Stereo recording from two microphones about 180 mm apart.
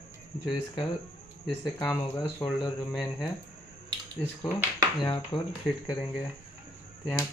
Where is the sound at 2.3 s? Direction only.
15° left (ahead or behind).